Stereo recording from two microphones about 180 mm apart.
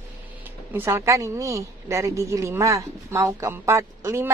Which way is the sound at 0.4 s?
10° right (ahead or behind).